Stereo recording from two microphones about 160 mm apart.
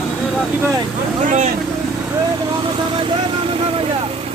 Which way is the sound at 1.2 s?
50° right (ahead or behind).